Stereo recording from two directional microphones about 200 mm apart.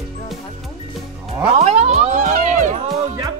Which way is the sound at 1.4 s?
30° right (ahead or behind).